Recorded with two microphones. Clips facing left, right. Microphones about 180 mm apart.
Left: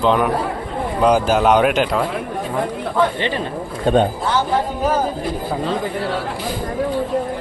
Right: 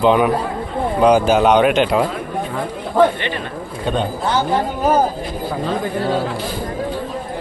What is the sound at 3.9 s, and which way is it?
Speech, 45° left (ahead or behind).